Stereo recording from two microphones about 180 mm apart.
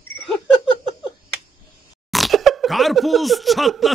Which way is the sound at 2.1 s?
Centre (ahead or behind).